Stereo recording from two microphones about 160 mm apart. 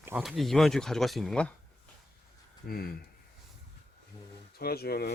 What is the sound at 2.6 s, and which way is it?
Speech, 70° left (ahead or behind).